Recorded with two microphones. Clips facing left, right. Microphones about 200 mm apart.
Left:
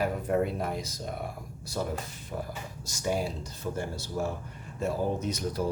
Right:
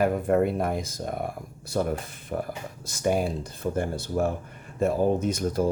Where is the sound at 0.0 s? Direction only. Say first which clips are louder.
Right 5 dB; 55° right (ahead or behind).